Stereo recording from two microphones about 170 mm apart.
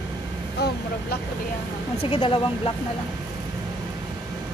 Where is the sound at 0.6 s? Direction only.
75° left (ahead or behind).